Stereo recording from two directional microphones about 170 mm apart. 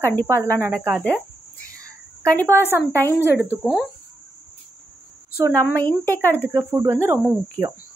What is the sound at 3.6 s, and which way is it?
Speech, centre (ahead or behind).